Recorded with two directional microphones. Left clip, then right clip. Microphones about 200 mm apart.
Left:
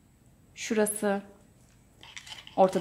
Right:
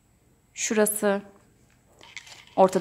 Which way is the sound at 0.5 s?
25° right (ahead or behind).